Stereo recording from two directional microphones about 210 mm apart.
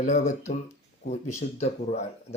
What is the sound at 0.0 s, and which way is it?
Speech, 35° left (ahead or behind).